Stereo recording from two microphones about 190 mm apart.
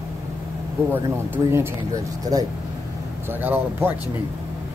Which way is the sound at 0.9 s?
10° right (ahead or behind).